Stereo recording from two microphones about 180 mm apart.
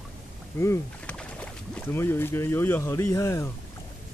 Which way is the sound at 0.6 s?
15° left (ahead or behind).